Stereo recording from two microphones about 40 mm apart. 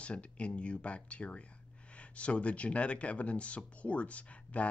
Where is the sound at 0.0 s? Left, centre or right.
Left.